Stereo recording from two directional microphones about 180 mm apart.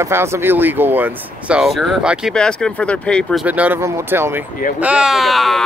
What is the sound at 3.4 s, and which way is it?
Speech, 10° right (ahead or behind).